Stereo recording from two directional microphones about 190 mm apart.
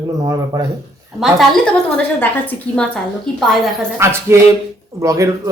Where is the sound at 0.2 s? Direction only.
20° right (ahead or behind).